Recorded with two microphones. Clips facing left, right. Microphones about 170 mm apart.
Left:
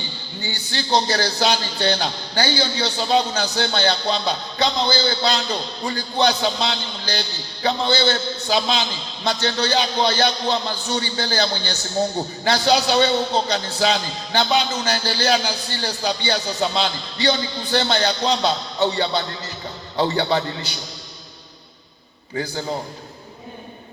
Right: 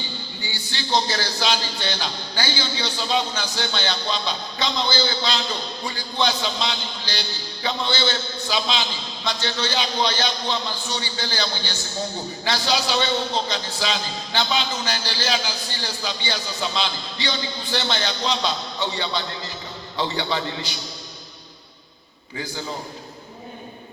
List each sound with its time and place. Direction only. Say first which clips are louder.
0.4 s a man's voice: left 5 dB; 45° left (ahead or behind)